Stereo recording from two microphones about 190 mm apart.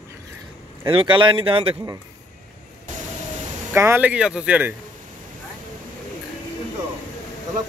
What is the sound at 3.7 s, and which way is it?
Speech, 10° right (ahead or behind).